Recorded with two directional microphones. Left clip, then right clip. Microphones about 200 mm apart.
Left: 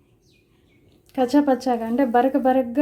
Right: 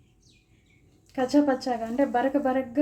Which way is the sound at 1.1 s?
35° left (ahead or behind).